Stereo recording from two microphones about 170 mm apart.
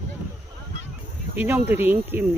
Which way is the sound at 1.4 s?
10° right (ahead or behind).